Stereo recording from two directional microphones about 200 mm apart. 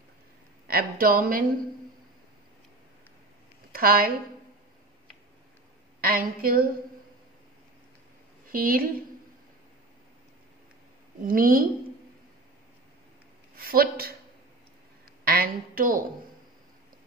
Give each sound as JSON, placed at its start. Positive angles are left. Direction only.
{"t": 0.7, "sound": "speech", "side_deg": -50}
{"t": 3.7, "sound": "a woman's voice", "side_deg": -45}
{"t": 5.9, "sound": "speech", "side_deg": -45}
{"t": 8.5, "sound": "a woman's voice", "side_deg": -45}
{"t": 11.2, "sound": "speech", "side_deg": -45}
{"t": 13.6, "sound": "a woman's voice", "side_deg": -50}
{"t": 15.2, "sound": "a woman's voice", "side_deg": -45}